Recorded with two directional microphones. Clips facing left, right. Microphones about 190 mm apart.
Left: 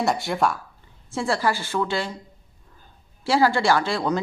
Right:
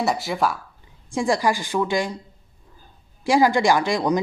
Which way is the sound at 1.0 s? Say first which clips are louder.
Right 3 dB; 15° right (ahead or behind).